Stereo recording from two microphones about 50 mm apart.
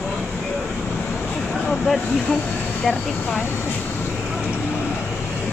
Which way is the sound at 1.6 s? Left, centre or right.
Left.